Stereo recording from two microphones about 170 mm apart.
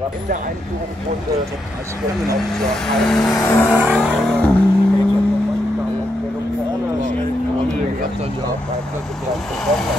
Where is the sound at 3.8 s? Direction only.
5° right (ahead or behind).